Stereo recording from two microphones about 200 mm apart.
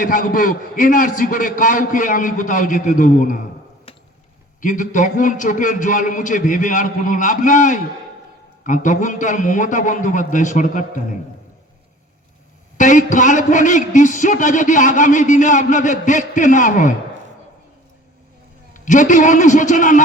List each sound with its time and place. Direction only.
0.0 s a man's voice: 45° left (ahead or behind)
3.9 s a sound: 30° left (ahead or behind)
4.6 s a man's voice: 40° left (ahead or behind)
12.7 s a man's voice: 40° left (ahead or behind)
18.7 s a man's voice: 40° left (ahead or behind)